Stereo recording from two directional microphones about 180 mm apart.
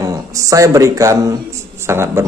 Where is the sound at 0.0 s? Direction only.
20° right (ahead or behind).